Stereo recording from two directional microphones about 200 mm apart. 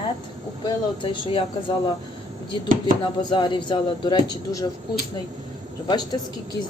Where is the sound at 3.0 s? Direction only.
20° left (ahead or behind).